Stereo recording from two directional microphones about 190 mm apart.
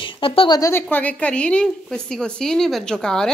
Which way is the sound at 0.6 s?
10° left (ahead or behind).